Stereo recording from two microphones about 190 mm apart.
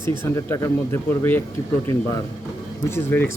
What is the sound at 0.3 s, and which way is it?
Speech, 15° left (ahead or behind).